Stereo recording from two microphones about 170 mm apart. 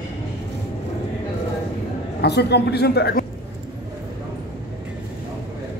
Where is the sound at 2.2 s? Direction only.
75° left (ahead or behind).